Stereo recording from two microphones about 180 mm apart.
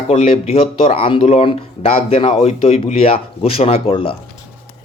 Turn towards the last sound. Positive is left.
turn(degrees=30)  # may be behind; listen again after turning